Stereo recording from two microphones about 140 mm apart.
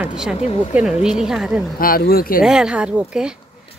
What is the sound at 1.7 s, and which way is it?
Speech, 90° left.